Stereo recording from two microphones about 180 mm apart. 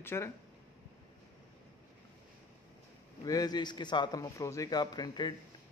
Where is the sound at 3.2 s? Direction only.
20° left (ahead or behind).